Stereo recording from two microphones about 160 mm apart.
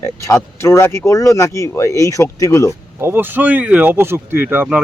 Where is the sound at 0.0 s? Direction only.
15° left (ahead or behind).